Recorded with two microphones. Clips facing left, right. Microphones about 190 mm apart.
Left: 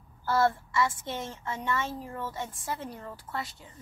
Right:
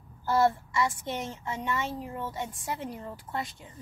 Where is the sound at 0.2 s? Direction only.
15° right (ahead or behind).